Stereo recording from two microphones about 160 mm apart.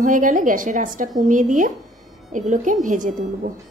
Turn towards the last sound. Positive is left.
turn(degrees=-55)  # may be behind; listen again after turning